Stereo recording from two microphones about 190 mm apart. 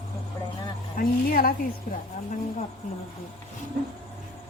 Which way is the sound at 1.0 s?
50° left (ahead or behind).